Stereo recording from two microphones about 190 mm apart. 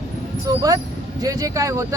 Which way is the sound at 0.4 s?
20° right (ahead or behind).